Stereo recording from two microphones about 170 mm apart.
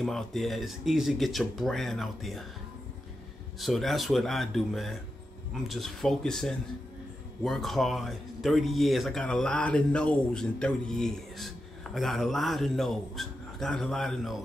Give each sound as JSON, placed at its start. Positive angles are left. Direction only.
{"t": 0.0, "sound": "speech", "side_deg": 0}
{"t": 3.5, "sound": "speech", "side_deg": 0}